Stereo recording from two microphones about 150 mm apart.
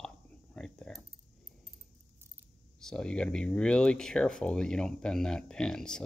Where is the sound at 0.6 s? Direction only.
5° left (ahead or behind).